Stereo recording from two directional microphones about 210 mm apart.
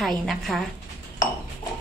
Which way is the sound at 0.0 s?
Centre (ahead or behind).